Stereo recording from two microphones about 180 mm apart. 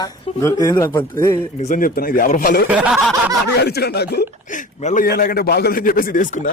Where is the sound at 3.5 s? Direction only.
65° left (ahead or behind).